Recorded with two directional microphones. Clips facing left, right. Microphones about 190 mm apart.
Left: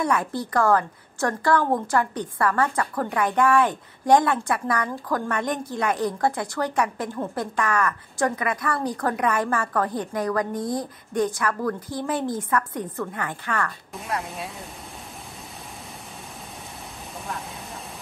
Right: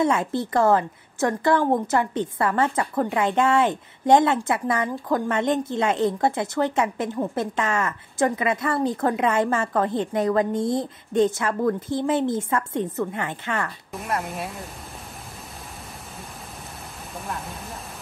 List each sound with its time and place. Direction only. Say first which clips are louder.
0.0 s a woman's voice: right 3 dB; 25° right (ahead or behind)
13.9 s speech: right 3 dB; centre (ahead or behind)